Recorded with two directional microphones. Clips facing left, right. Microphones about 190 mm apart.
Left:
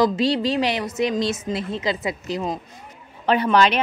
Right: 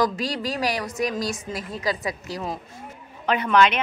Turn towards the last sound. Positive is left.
turn(degrees=35)  # may be behind; listen again after turning